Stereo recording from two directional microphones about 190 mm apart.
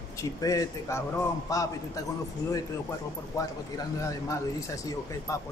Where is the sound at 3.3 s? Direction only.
15° left (ahead or behind).